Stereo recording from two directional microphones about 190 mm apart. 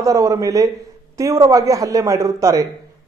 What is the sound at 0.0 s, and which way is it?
Speech, 15° right (ahead or behind).